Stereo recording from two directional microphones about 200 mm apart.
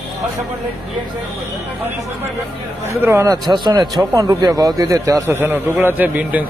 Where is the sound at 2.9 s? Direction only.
15° right (ahead or behind).